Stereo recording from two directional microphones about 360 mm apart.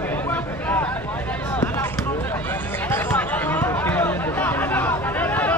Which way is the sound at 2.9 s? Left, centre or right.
Centre.